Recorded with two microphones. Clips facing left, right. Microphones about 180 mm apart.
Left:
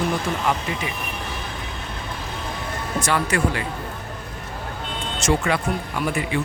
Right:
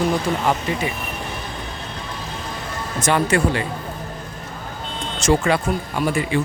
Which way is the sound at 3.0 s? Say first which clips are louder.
Right 4 dB; 25° right (ahead or behind).